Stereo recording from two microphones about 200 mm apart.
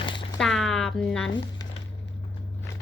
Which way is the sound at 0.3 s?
Centre (ahead or behind).